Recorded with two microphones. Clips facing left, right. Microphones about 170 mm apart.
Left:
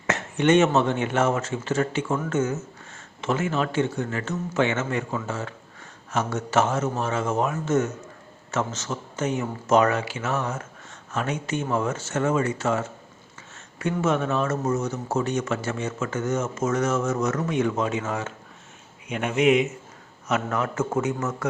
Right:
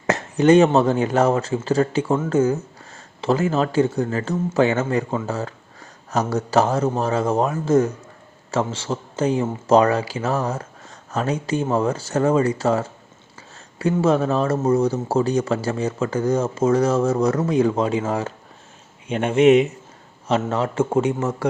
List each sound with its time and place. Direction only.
0.1 s a man's voice: 35° right (ahead or behind)